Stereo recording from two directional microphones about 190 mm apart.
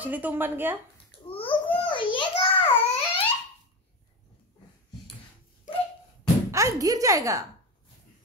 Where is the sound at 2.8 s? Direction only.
30° left (ahead or behind).